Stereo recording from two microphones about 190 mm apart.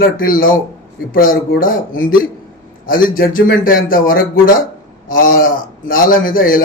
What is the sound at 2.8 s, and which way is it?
A man's voice, 45° left (ahead or behind).